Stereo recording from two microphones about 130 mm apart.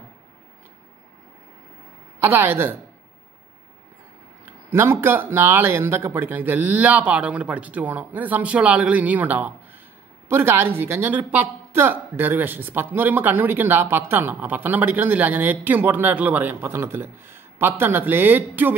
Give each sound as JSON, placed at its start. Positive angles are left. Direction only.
{"t": 2.1, "sound": "a woman's voice", "side_deg": -15}
{"t": 4.5, "sound": "a woman's voice", "side_deg": -20}